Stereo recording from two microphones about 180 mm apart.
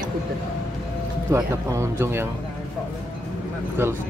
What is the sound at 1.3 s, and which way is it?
Speech, 15° right (ahead or behind).